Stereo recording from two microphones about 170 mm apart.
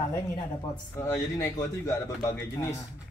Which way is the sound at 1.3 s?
20° left (ahead or behind).